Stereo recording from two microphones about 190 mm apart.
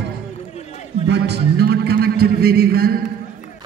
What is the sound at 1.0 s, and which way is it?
A man's voice, 65° right (ahead or behind).